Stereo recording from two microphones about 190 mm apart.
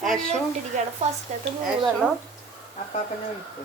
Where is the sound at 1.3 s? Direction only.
40° right (ahead or behind).